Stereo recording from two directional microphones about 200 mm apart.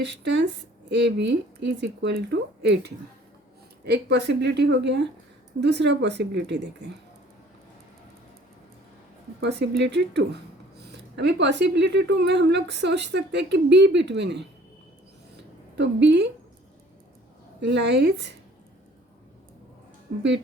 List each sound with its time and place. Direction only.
0.0 s a woman's voice: 60° right (ahead or behind)
9.4 s a woman's voice: 55° right (ahead or behind)
15.8 s a woman's voice: 60° right (ahead or behind)
17.6 s a woman's voice: 60° right (ahead or behind)